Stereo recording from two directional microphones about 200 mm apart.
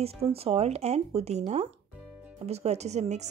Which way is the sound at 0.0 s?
30° right (ahead or behind).